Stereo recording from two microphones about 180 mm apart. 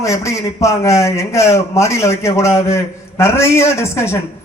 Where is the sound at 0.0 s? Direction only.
15° left (ahead or behind).